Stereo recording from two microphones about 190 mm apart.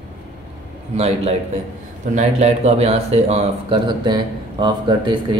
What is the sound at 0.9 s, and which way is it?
A man's voice, 35° right (ahead or behind).